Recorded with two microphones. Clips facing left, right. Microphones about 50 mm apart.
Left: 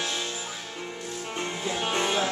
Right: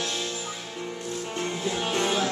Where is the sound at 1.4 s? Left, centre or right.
Centre.